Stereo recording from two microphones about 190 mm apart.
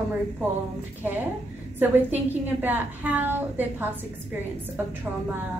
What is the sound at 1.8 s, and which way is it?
A woman's voice, 10° right (ahead or behind).